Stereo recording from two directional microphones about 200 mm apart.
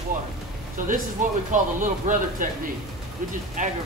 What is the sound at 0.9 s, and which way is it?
Speech, 40° right (ahead or behind).